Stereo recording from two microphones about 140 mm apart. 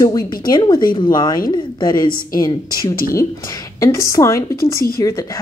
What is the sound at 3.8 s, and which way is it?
A woman's voice, 20° left (ahead or behind).